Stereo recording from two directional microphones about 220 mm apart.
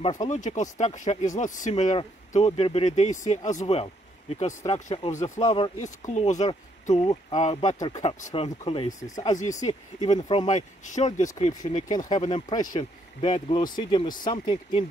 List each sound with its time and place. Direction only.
0.3 s speech: 35° left (ahead or behind); by 9.2 s 15° left (ahead or behind)
9.2 s speech: 35° left (ahead or behind)
10.1 s speech: 20° left (ahead or behind)
10.4 s speech: 30° left (ahead or behind)